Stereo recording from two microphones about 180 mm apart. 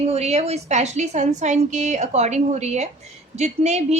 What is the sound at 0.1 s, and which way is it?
A woman's voice, 35° right (ahead or behind).